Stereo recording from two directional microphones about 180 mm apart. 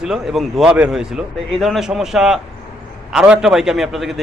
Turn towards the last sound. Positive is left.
turn(degrees=0)  # may be behind; listen again after turning